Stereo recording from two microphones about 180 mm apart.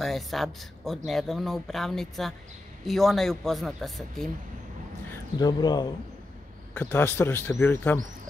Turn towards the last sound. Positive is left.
turn(degrees=10)  # may be behind; listen again after turning